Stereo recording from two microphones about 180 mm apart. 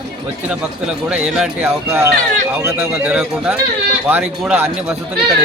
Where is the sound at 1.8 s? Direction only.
15° right (ahead or behind).